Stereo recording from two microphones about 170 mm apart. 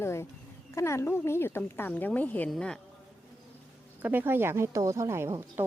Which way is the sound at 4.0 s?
10° right (ahead or behind).